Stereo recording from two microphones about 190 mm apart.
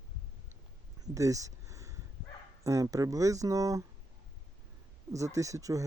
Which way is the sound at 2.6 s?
15° right (ahead or behind).